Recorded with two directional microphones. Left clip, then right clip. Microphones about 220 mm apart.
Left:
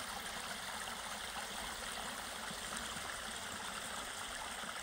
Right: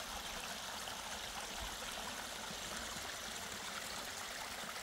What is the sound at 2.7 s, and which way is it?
Stream, 25° right (ahead or behind).